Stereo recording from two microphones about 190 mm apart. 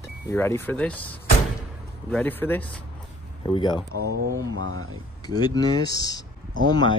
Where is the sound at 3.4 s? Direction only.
25° left (ahead or behind).